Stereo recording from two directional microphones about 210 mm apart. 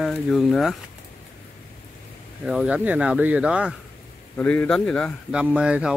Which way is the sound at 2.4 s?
5° right (ahead or behind).